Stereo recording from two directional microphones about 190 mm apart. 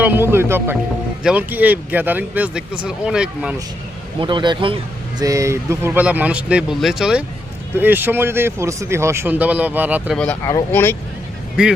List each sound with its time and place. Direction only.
0.0 s speech: 10° right (ahead or behind)
4.2 s speech: 25° right (ahead or behind); by 10.2 s 10° right (ahead or behind)
10.4 s speech: 15° left (ahead or behind)